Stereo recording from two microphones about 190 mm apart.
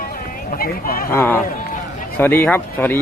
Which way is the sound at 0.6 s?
50° left (ahead or behind).